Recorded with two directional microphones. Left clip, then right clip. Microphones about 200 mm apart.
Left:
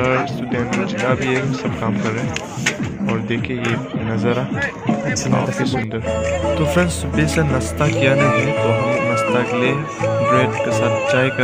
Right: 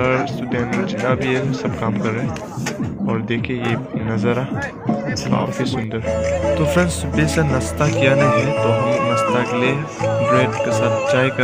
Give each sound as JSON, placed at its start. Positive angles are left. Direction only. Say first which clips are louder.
{"t": 0.0, "sound": "speech", "louder": "even", "side_deg": 0}
{"t": 6.5, "sound": "speech", "louder": "even", "side_deg": 0}
{"t": 8.7, "sound": "music", "louder": "even", "side_deg": 25}
{"t": 9.3, "sound": "speech", "louder": "left 1 dB", "side_deg": 0}